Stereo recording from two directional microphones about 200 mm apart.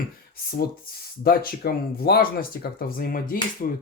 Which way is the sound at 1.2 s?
50° left (ahead or behind).